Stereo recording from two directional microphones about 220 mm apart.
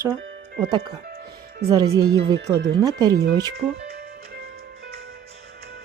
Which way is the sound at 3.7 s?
45° right (ahead or behind).